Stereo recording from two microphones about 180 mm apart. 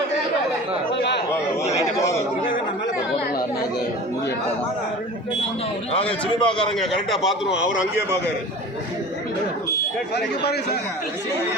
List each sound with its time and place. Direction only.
5.9 s a man's voice: 30° left (ahead or behind)
6.4 s a man's voice: 5° left (ahead or behind)
10.2 s speech: 65° left (ahead or behind)